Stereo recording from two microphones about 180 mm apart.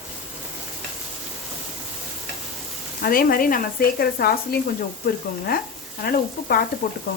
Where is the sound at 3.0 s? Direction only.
55° left (ahead or behind).